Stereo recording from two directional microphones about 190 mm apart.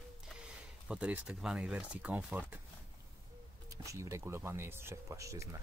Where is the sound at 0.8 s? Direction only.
5° right (ahead or behind).